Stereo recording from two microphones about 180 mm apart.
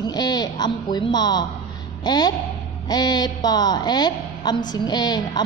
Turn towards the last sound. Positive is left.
turn(degrees=25)  # may be behind; listen again after turning